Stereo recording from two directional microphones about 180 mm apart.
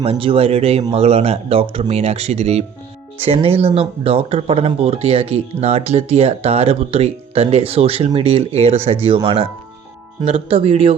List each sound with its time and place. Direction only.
0.0 s speech: 30° right (ahead or behind)